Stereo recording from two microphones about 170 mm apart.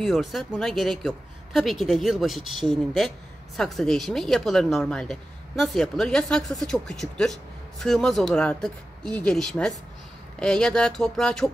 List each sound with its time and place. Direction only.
0.0 s speech: centre (ahead or behind)